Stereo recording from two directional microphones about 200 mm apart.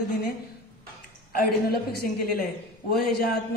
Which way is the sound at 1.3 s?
50° left (ahead or behind).